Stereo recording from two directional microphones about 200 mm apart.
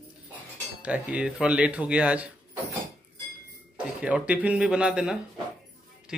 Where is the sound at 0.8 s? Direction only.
5° right (ahead or behind).